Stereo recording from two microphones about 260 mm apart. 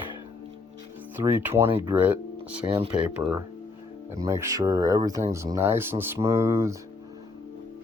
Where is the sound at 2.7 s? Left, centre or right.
Right.